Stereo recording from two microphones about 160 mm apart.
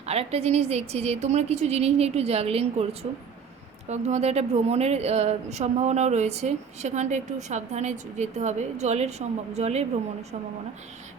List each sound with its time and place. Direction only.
0.0 s a woman's voice: 40° right (ahead or behind)